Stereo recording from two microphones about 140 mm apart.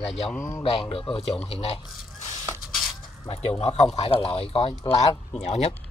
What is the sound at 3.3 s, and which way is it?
Speech, 45° left (ahead or behind).